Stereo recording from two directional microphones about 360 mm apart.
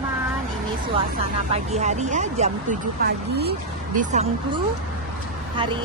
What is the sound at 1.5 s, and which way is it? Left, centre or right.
Speech, centre.